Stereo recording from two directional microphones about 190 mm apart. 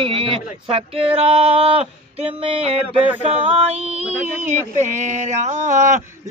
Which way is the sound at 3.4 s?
35° right (ahead or behind).